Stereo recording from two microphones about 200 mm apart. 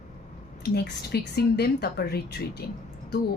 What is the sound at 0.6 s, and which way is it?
Speech, 55° left (ahead or behind).